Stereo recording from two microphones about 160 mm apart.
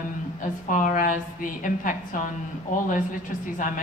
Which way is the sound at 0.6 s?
55° left (ahead or behind).